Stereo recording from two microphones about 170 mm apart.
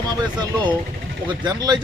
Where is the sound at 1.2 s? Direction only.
25° right (ahead or behind).